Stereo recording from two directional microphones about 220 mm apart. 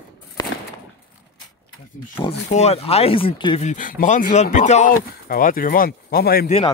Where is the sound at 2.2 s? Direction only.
30° left (ahead or behind).